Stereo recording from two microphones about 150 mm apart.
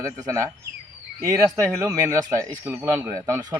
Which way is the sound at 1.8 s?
20° right (ahead or behind).